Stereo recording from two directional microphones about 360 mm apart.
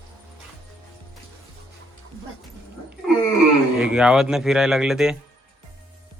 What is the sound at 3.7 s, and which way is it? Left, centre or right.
Speech, centre.